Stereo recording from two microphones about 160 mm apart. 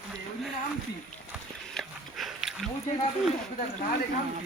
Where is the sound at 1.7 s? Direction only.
Centre (ahead or behind).